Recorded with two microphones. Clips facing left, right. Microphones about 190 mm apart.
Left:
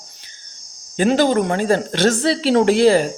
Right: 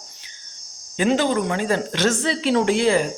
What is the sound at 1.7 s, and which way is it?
Speech, 35° left (ahead or behind).